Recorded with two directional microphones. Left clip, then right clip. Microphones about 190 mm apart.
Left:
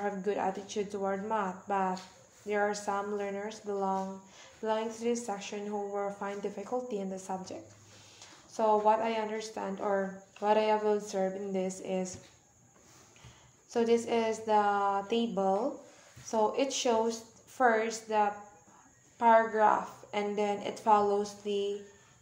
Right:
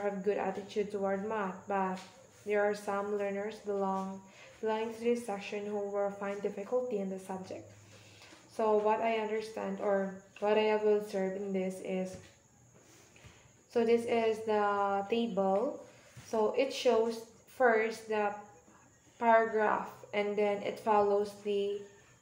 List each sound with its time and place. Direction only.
0.0 s speech: 35° left (ahead or behind)
8.5 s speech: 40° left (ahead or behind)
13.7 s speech: 40° left (ahead or behind)